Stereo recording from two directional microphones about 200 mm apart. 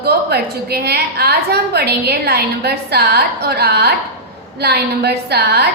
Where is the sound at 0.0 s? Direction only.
55° right (ahead or behind).